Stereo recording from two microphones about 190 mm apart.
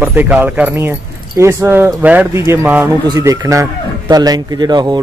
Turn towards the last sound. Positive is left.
turn(degrees=-20)  # may be behind; listen again after turning